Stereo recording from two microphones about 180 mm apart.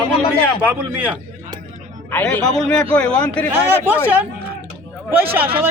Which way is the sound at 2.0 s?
10° left (ahead or behind).